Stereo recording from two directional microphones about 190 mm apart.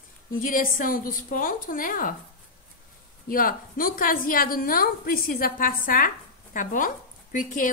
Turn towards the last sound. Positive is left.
turn(degrees=45)  # may be behind; listen again after turning